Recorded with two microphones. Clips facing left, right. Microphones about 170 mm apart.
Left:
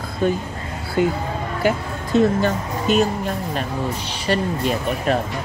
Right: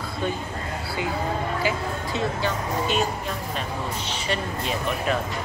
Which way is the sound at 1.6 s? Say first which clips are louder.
Left 5 dB; 55° left (ahead or behind).